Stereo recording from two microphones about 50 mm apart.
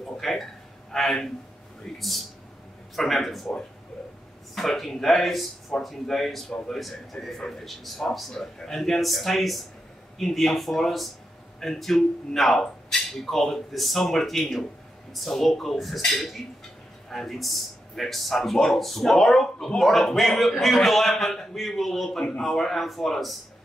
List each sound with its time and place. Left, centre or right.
0.2 s speech: centre
4.6 s speech: centre